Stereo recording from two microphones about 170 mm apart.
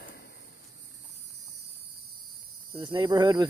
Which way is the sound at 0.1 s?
70° left (ahead or behind).